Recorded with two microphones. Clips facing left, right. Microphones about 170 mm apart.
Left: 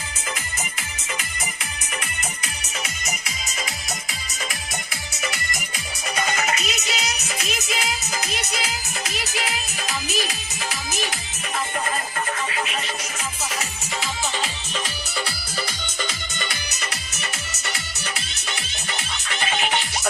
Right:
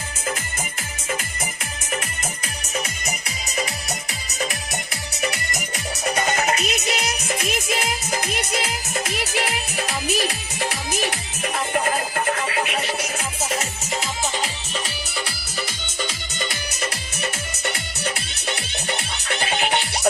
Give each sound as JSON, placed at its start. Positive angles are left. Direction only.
{"t": 5.2, "sound": "music", "side_deg": -35}
{"t": 6.1, "sound": "music", "side_deg": -50}
{"t": 19.4, "sound": "music", "side_deg": -35}